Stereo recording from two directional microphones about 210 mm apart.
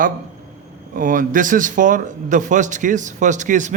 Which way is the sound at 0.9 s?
40° right (ahead or behind).